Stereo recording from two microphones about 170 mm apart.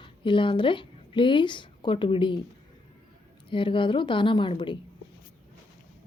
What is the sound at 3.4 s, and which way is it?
Speech, 30° left (ahead or behind).